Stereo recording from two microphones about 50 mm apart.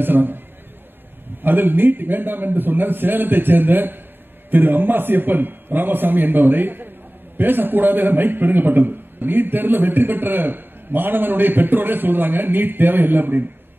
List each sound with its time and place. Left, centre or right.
0.0 s a man's voice: right
1.4 s a man's voice: right